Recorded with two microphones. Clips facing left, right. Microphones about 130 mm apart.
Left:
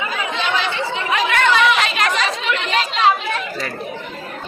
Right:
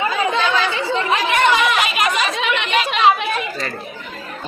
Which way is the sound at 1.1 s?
20° right (ahead or behind).